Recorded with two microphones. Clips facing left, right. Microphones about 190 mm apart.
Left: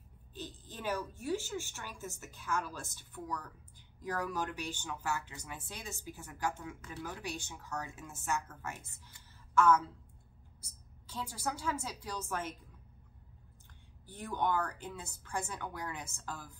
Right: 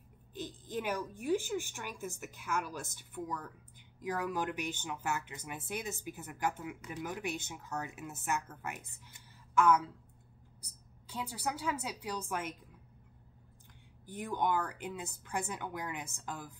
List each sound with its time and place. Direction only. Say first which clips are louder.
0.3 s speech: right 6 dB; 15° right (ahead or behind)
10.6 s a sound: right 1 dB; 15° right (ahead or behind)
11.6 s speech: right 1 dB; 15° right (ahead or behind)
14.0 s speech: right 1 dB; 15° right (ahead or behind)